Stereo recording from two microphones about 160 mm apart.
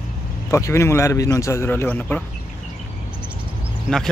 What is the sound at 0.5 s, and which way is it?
Speech, 15° left (ahead or behind).